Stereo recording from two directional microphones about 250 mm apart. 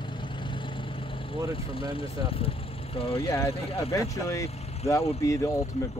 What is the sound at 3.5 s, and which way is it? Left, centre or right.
Speech, centre.